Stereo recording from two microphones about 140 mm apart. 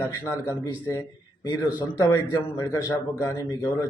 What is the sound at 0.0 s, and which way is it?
A man's voice, 20° left (ahead or behind).